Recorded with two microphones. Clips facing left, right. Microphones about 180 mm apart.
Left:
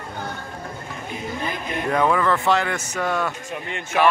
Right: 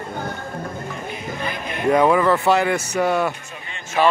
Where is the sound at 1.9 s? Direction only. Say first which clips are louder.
Right 5 dB; 15° right (ahead or behind).